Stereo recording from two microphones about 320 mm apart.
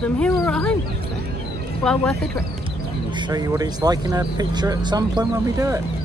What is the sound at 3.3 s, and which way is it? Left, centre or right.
Speech, centre.